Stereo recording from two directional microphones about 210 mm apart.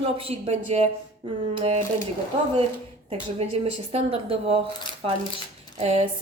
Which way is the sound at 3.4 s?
30° right (ahead or behind).